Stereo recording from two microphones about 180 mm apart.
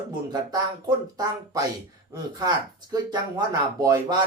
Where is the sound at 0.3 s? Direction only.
20° right (ahead or behind).